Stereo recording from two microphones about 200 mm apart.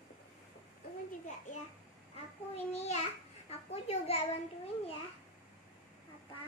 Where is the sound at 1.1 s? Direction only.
40° left (ahead or behind).